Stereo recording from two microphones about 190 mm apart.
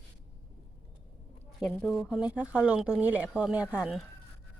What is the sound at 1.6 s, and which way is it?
Speech, centre (ahead or behind).